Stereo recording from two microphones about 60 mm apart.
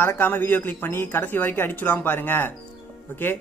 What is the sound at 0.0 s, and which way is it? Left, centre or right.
Speech, left.